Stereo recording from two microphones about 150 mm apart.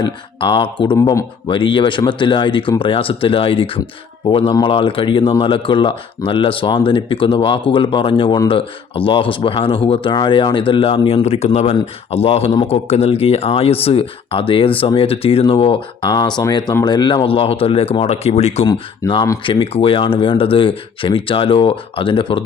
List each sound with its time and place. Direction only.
0.0 s speech: 35° left (ahead or behind)
0.9 s speech: 20° left (ahead or behind)
1.5 s speech: 35° left (ahead or behind)
18.6 s speech: 30° left (ahead or behind)